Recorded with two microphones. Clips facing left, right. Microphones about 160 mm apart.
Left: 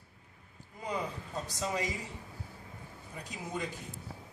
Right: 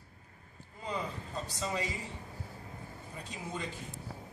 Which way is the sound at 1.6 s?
15° left (ahead or behind).